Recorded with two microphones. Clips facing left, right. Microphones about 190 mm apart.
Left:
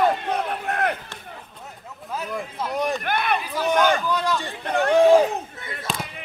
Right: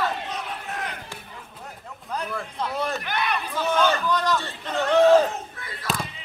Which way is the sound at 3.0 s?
55° left (ahead or behind).